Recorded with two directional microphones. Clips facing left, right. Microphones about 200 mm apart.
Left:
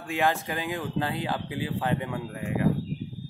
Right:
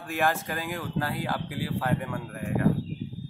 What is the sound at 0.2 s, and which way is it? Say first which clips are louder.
Speech: left 1 dB; 15° left (ahead or behind).